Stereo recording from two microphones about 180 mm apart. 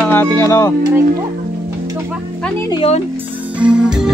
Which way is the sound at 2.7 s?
30° left (ahead or behind).